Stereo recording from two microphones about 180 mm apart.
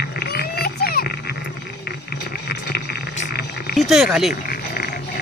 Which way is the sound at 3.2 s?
60° left (ahead or behind).